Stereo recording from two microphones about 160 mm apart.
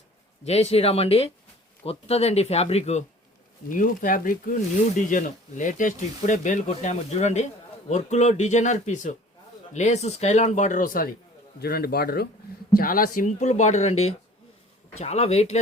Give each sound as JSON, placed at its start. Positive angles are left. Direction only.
{"t": 0.4, "sound": "speech", "side_deg": 40}
{"t": 3.7, "sound": "speech", "side_deg": 55}
{"t": 11.6, "sound": "speech", "side_deg": 75}
{"t": 12.7, "sound": "speech", "side_deg": 65}